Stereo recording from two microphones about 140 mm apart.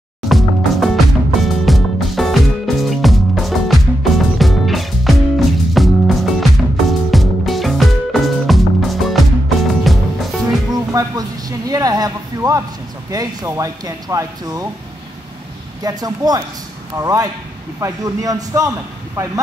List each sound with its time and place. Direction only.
0.3 s music: centre (ahead or behind)
10.7 s a sound: 25° right (ahead or behind)
13.1 s speech: 25° right (ahead or behind)
15.8 s speech: 30° right (ahead or behind)